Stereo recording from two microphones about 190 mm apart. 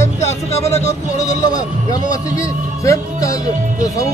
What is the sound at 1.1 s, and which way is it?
A man's voice, 20° left (ahead or behind).